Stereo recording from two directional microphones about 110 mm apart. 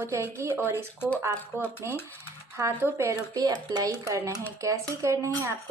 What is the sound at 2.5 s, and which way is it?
A woman's voice, 25° right (ahead or behind).